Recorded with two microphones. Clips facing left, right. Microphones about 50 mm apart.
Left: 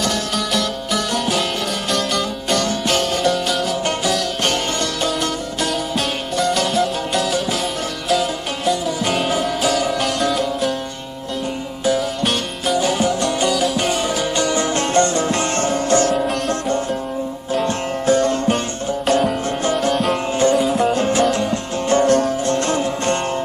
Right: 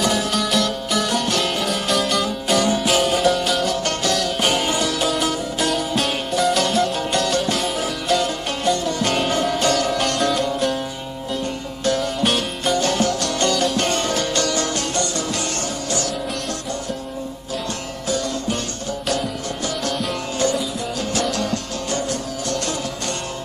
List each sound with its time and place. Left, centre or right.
0.0 s music: centre
11.8 s music: centre
13.5 s music: centre; by 14.9 s left
15.0 s music: left
18.0 s music: left
20.5 s music: left
20.9 s music: left
21.9 s music: left
22.5 s music: left